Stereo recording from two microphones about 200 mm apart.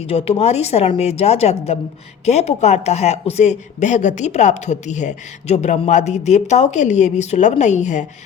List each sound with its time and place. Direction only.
0.0 s speech: 30° left (ahead or behind)